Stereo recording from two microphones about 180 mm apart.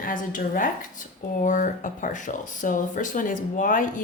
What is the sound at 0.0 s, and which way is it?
Speech, 50° left (ahead or behind).